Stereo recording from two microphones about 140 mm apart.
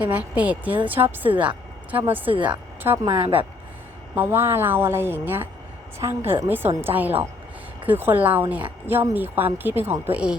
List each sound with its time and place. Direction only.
0.0 s a woman's voice: 10° right (ahead or behind)
3.0 s speech: 35° right (ahead or behind)
4.1 s a woman's voice: 15° right (ahead or behind)